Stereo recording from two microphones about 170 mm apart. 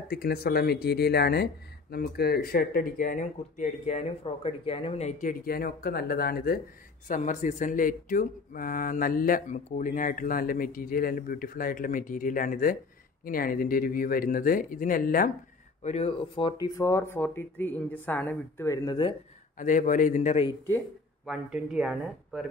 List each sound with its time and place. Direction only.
0.1 s speech: 65° left (ahead or behind); by 5.3 s 40° left (ahead or behind)
5.4 s speech: 60° left (ahead or behind)
7.1 s speech: 45° left (ahead or behind)
15.8 s speech: 40° left (ahead or behind); by 18.9 s 15° left (ahead or behind)
19.6 s a man's voice: 50° left (ahead or behind)
21.3 s speech: 5° right (ahead or behind)